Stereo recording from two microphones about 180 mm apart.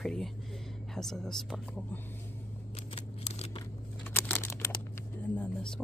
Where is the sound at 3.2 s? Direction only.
35° left (ahead or behind).